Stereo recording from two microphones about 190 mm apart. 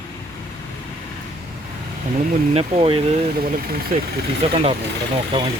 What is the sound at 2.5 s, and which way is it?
Speech, 30° right (ahead or behind).